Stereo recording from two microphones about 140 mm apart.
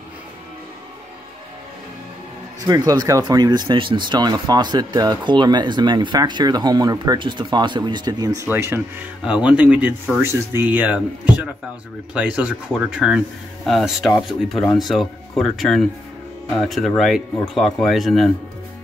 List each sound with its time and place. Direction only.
2.6 s speech: 25° right (ahead or behind)
8.4 s speech: 20° right (ahead or behind); by 18.3 s centre (ahead or behind)